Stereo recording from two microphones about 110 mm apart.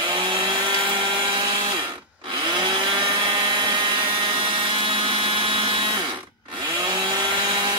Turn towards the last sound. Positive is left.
turn(degrees=-45)  # may be behind; listen again after turning